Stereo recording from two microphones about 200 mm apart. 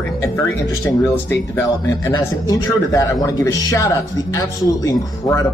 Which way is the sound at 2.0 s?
20° left (ahead or behind).